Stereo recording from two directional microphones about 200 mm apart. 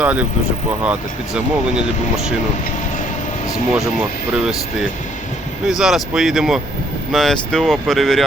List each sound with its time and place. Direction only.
0.0 s speech: 5° right (ahead or behind)
5.6 s speech: centre (ahead or behind)